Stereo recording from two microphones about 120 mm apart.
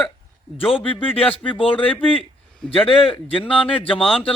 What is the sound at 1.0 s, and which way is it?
Speech, 50° left (ahead or behind).